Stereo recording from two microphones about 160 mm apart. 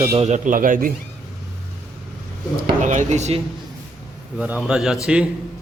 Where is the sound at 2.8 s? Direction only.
50° right (ahead or behind).